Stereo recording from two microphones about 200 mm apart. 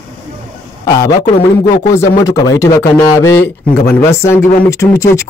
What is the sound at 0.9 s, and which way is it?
A man's voice, 20° left (ahead or behind).